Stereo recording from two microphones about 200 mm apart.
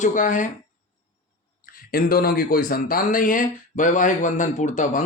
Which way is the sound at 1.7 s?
45° left (ahead or behind).